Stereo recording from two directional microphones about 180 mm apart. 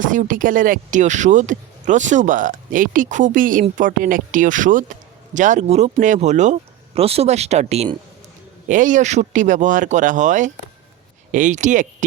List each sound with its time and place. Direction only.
0.0 s speech: 45° right (ahead or behind)